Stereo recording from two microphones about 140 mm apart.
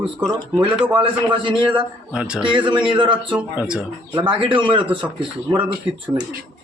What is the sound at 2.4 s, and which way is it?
Speech, 35° right (ahead or behind).